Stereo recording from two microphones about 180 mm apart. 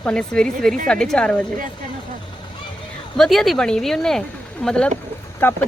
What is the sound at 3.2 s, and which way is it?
A woman's voice, centre (ahead or behind).